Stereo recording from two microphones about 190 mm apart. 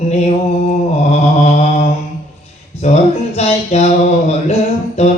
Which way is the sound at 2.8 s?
35° left (ahead or behind).